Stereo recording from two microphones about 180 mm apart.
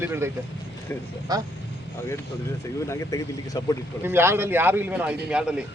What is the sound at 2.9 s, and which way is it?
Speech, 15° left (ahead or behind).